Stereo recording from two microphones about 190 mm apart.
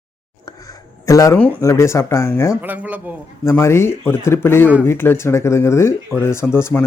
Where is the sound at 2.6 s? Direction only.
10° right (ahead or behind).